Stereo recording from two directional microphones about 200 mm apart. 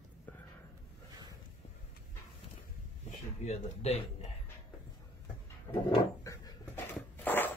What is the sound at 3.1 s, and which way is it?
Speech, 35° left (ahead or behind).